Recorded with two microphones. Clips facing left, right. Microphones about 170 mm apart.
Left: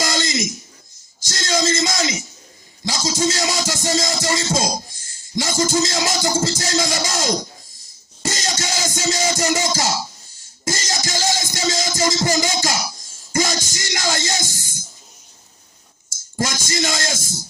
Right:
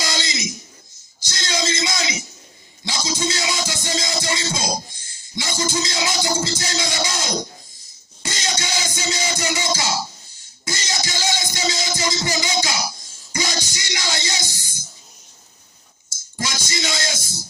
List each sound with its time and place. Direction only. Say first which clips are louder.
0.0 s a sound: left 5 dB; 50° left (ahead or behind)
1.3 s speech: left 4 dB; 45° left (ahead or behind)
2.8 s music: left 4 dB; 40° left (ahead or behind)
16.4 s music: left 5 dB; 45° left (ahead or behind)